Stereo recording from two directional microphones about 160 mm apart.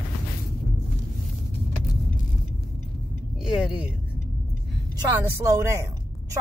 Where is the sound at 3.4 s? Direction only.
5° right (ahead or behind).